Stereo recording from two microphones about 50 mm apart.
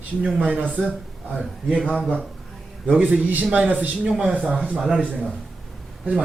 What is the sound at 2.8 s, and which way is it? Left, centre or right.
Speech, right.